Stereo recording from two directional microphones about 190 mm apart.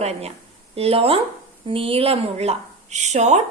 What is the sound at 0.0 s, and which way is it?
A woman's voice, 35° right (ahead or behind).